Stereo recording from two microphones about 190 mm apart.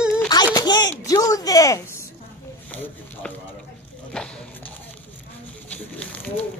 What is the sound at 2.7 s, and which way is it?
Speech, 10° left (ahead or behind).